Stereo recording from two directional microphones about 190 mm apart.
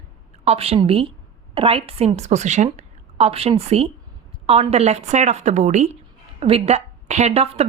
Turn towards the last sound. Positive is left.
turn(degrees=-30)  # may be behind; listen again after turning